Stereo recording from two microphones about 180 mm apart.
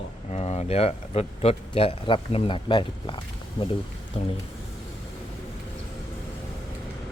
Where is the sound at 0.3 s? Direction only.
35° left (ahead or behind).